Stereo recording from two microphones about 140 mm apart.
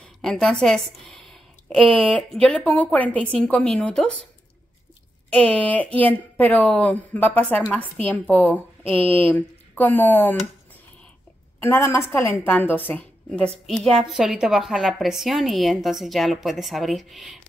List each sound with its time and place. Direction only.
0.0 s a sound: 5° left (ahead or behind)
2.4 s a woman's voice: 5° left (ahead or behind)
5.3 s a woman's voice: 10° left (ahead or behind)
11.6 s a woman's voice: 20° left (ahead or behind)
13.3 s a woman's voice: centre (ahead or behind)